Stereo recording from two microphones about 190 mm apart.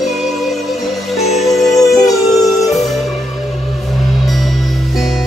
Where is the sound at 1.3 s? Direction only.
Centre (ahead or behind).